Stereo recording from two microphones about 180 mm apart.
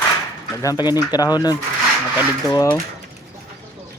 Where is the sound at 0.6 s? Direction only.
20° left (ahead or behind).